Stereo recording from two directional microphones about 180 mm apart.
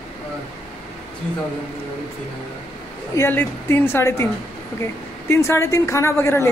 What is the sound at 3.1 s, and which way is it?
Speech, 15° left (ahead or behind).